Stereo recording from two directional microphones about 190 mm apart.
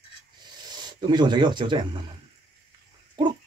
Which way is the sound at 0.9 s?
25° right (ahead or behind).